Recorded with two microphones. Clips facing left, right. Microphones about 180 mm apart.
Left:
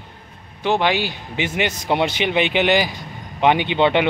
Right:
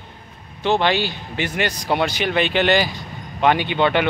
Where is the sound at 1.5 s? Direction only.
25° left (ahead or behind).